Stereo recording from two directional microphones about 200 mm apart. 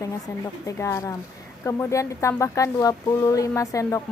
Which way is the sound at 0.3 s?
15° left (ahead or behind).